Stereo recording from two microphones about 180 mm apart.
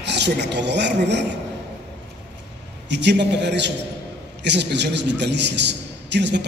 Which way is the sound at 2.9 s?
75° right (ahead or behind).